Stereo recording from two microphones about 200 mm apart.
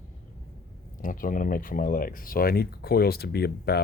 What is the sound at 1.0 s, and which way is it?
Speech, 45° left (ahead or behind).